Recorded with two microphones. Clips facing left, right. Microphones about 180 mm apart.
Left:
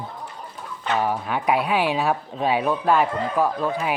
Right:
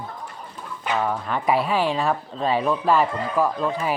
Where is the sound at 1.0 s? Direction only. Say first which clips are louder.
Left 1 dB; 10° left (ahead or behind).